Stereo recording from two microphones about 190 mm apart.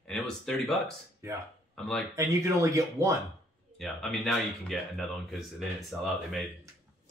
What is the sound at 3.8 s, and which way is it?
Speech, centre (ahead or behind).